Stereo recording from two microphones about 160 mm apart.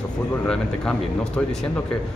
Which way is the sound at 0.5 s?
5° left (ahead or behind).